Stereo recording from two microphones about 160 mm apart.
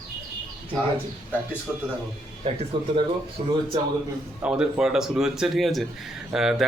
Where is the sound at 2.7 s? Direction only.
30° right (ahead or behind).